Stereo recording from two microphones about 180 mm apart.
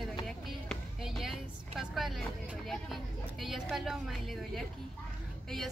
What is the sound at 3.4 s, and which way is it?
A woman's voice, centre (ahead or behind).